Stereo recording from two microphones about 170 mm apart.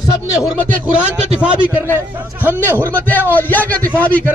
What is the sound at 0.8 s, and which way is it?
A man's voice, 5° right (ahead or behind).